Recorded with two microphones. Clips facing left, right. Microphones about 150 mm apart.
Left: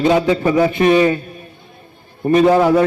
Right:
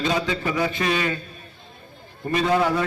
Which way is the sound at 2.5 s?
40° left (ahead or behind).